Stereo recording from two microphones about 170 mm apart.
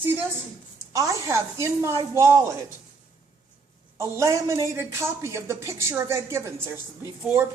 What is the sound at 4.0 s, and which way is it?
Speech, 20° right (ahead or behind).